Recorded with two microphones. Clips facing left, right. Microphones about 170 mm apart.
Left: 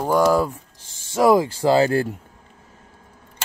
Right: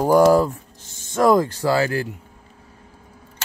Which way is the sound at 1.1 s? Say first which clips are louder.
Even; 5° left (ahead or behind).